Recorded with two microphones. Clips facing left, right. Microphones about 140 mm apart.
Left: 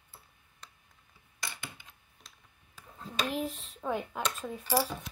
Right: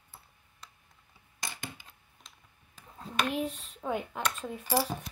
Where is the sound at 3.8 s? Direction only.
Centre (ahead or behind).